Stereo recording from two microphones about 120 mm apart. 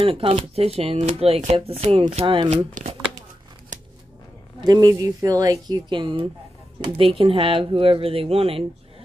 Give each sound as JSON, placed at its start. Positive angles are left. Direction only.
{"t": 0.0, "sound": "speech", "side_deg": -50}
{"t": 4.6, "sound": "speech", "side_deg": -30}